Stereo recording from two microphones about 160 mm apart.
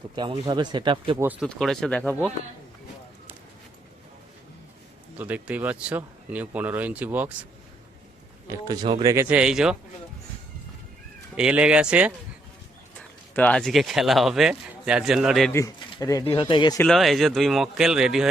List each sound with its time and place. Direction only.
0.2 s speech: 30° right (ahead or behind)
1.4 s speech: 5° left (ahead or behind)
5.1 s speech: 10° right (ahead or behind)
8.4 s speech: 25° right (ahead or behind)
9.1 s speech: 5° right (ahead or behind)
11.3 s speech: 5° right (ahead or behind)
13.0 s speech: 10° left (ahead or behind)
15.9 s speech: 20° left (ahead or behind)
16.8 s speech: centre (ahead or behind)